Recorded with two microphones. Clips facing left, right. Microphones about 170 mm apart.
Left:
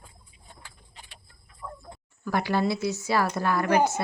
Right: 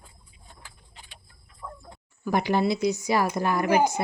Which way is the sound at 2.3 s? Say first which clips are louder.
Right 2 dB; 20° right (ahead or behind).